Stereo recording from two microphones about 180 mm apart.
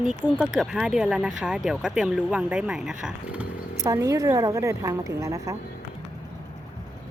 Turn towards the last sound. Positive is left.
turn(degrees=-15)  # may be behind; listen again after turning